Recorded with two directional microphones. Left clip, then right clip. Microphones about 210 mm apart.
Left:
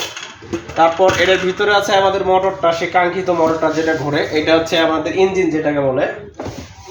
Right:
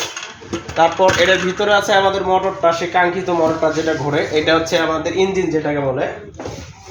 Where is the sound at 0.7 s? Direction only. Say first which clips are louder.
Left 1 dB; 15° right (ahead or behind).